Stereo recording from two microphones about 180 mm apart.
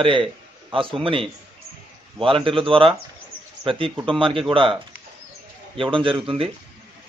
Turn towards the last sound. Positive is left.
turn(degrees=-30)  # may be behind; listen again after turning